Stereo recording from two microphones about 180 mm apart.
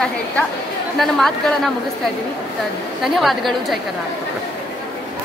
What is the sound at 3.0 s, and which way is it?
Speech, centre (ahead or behind).